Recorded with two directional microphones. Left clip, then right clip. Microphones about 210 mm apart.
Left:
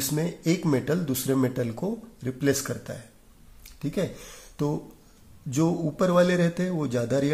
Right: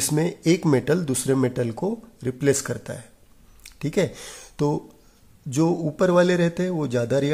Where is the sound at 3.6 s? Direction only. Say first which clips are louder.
Right 6 dB; 40° right (ahead or behind).